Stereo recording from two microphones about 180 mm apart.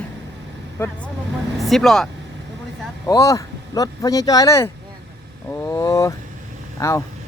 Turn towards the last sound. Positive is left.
turn(degrees=15)  # may be behind; listen again after turning